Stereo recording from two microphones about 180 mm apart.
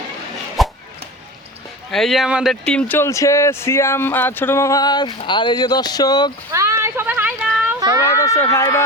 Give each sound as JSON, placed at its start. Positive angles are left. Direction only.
{"t": 0.6, "sound": "a sound", "side_deg": 0}
{"t": 1.9, "sound": "speech", "side_deg": 0}
{"t": 6.5, "sound": "speech", "side_deg": -15}
{"t": 8.0, "sound": "speech", "side_deg": 20}